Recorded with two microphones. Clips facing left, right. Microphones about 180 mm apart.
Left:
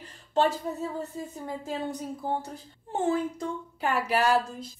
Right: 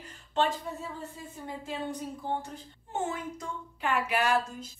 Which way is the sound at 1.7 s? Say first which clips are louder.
Left 2 dB; 40° left (ahead or behind).